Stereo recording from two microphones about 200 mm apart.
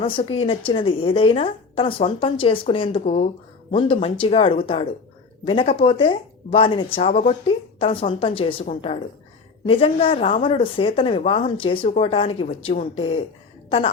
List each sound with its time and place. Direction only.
0.0 s a woman's voice: 25° left (ahead or behind)